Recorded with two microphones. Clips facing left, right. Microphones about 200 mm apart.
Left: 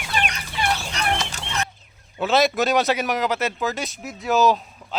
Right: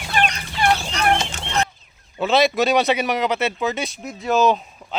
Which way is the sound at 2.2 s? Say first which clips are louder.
Right 2 dB; centre (ahead or behind).